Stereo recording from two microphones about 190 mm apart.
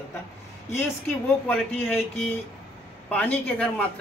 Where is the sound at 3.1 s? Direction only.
5° left (ahead or behind).